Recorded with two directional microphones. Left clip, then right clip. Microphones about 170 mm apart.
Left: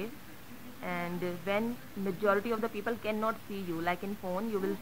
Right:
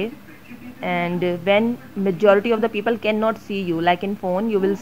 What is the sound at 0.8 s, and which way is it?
Speech, 45° right (ahead or behind).